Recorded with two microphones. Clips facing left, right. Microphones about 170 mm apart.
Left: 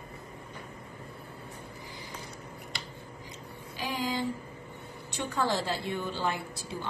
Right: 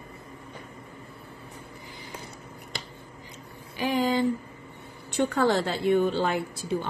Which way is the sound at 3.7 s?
60° right (ahead or behind).